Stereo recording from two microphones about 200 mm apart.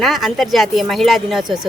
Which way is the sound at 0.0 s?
Centre (ahead or behind).